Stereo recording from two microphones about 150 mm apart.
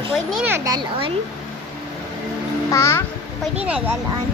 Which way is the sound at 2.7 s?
20° left (ahead or behind).